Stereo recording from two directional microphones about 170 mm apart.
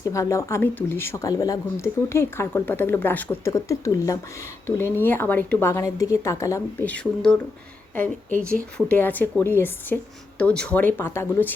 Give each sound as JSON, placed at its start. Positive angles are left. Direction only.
{"t": 0.0, "sound": "speech", "side_deg": 20}
{"t": 8.4, "sound": "speech", "side_deg": 5}